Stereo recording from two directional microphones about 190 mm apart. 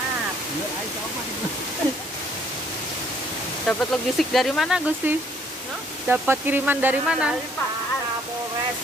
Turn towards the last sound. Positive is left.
turn(degrees=-5)  # may be behind; listen again after turning